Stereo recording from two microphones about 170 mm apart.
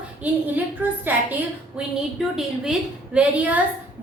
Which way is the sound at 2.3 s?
5° right (ahead or behind).